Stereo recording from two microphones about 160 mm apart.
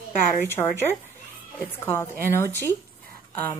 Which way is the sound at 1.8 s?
15° left (ahead or behind).